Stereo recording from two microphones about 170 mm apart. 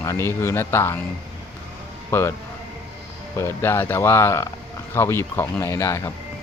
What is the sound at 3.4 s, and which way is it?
Speech, 15° left (ahead or behind).